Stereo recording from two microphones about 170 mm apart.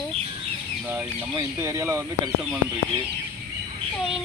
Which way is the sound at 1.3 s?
20° right (ahead or behind).